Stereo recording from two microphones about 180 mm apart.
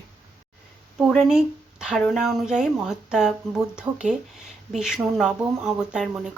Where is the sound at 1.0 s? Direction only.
Centre (ahead or behind).